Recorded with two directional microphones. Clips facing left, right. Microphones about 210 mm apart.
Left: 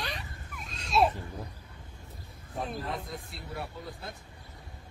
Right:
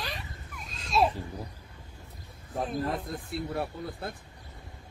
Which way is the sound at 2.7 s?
45° right (ahead or behind).